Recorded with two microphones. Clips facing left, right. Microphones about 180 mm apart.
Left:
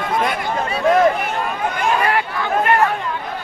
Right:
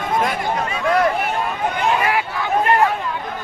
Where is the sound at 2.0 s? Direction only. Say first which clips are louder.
Left 1 dB; 10° right (ahead or behind).